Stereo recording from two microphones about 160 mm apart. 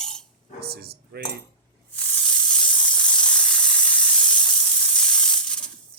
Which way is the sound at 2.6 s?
5° left (ahead or behind).